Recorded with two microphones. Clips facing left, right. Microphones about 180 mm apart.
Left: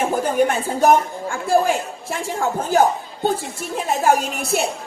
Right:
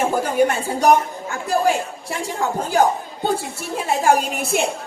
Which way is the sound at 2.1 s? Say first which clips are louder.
Left 1 dB; 15° right (ahead or behind).